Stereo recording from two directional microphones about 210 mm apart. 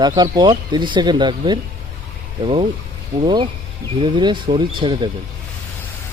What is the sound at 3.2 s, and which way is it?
Speech, 25° right (ahead or behind).